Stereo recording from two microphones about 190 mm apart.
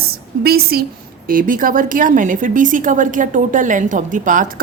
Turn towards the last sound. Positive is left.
turn(degrees=-45)  # may be behind; listen again after turning